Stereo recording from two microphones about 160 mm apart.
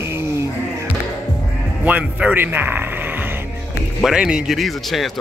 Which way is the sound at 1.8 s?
10° right (ahead or behind).